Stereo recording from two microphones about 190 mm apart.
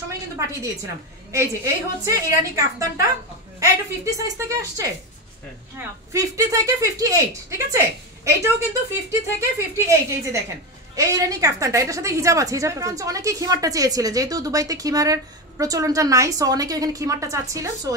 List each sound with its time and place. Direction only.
1.3 s a woman's voice: 15° right (ahead or behind)
9.4 s a woman's voice: 15° right (ahead or behind)